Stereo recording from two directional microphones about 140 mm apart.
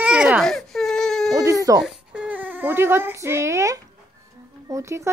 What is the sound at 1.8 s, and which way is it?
A woman's voice, 10° right (ahead or behind).